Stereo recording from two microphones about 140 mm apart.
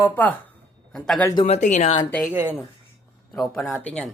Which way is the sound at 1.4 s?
55° left (ahead or behind).